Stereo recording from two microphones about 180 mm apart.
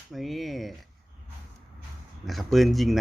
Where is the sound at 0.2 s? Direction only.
Centre (ahead or behind).